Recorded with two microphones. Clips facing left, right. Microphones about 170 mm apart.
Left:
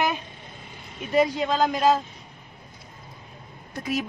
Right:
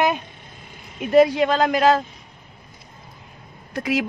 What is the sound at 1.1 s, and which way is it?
Speech, 70° right (ahead or behind).